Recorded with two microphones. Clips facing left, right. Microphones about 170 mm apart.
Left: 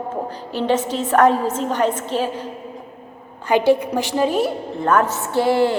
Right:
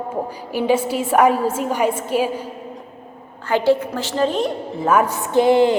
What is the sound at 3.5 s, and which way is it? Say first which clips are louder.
A woman's voice: left 1 dB; 15° left (ahead or behind).